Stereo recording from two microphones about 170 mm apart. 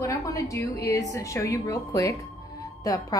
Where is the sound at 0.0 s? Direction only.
20° left (ahead or behind).